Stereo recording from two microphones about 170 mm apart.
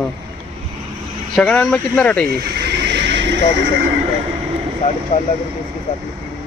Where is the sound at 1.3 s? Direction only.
5° left (ahead or behind).